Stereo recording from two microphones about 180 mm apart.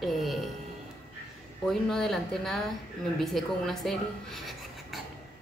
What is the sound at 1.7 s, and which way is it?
Speech, centre (ahead or behind).